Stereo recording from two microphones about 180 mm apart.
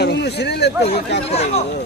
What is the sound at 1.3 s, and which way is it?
Speech, 35° left (ahead or behind).